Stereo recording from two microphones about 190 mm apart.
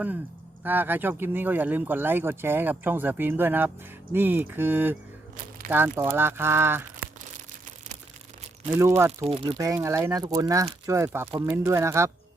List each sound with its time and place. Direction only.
0.6 s speech: 10° right (ahead or behind)
9.2 s speech: 30° right (ahead or behind)
9.6 s speech: 15° right (ahead or behind)